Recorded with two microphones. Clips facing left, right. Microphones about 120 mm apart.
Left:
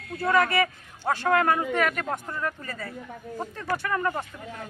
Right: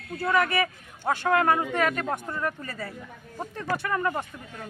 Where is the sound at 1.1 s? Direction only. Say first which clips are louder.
Even; 20° right (ahead or behind).